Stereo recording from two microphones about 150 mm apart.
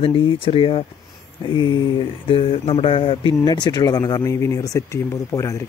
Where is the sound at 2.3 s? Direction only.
35° left (ahead or behind); by 5.5 s 20° left (ahead or behind).